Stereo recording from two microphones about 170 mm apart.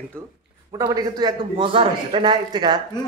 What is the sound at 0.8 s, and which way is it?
A man's voice, 20° right (ahead or behind).